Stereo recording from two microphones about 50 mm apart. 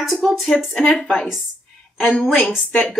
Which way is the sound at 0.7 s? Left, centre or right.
Centre.